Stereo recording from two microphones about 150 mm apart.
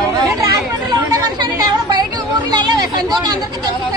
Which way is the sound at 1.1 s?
25° right (ahead or behind).